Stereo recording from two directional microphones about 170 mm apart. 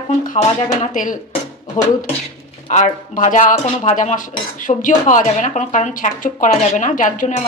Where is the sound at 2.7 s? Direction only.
50° left (ahead or behind).